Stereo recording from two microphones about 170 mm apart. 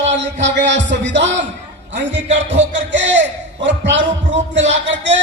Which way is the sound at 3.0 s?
90° right.